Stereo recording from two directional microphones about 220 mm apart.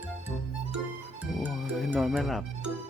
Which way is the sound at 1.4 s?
Centre (ahead or behind).